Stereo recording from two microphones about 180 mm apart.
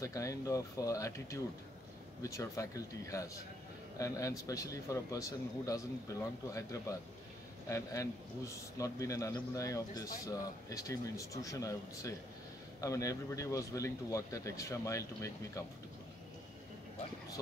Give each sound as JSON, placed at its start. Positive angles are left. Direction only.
{"t": 0.0, "sound": "a man's voice", "side_deg": 20}